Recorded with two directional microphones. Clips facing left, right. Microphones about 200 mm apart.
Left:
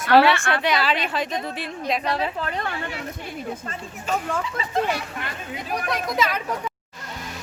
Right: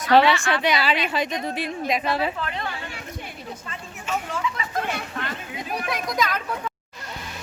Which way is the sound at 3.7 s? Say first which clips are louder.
Even; 35° left (ahead or behind).